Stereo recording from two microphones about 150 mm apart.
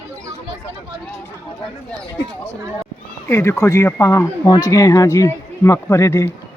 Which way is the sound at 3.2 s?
15° left (ahead or behind).